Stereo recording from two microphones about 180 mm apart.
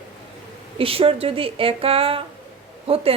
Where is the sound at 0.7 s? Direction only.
30° right (ahead or behind).